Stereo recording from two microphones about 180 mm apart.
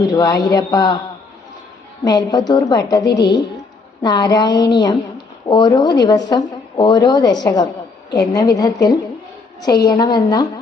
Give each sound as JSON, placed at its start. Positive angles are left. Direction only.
{"t": 0.1, "sound": "speech", "side_deg": 20}
{"t": 2.0, "sound": "speech", "side_deg": 20}